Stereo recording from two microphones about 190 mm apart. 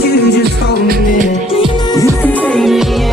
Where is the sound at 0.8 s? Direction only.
50° right (ahead or behind).